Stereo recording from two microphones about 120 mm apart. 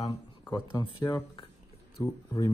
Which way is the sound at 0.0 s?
35° left (ahead or behind).